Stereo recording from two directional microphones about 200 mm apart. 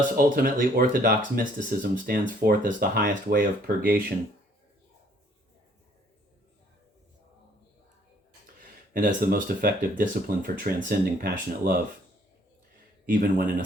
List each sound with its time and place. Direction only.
0.2 s speech: 40° right (ahead or behind)
8.9 s speech: 45° right (ahead or behind)
13.1 s speech: 40° right (ahead or behind)